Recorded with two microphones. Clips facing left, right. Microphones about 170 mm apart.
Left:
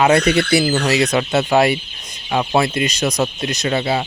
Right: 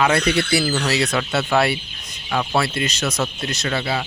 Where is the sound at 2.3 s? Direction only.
20° left (ahead or behind).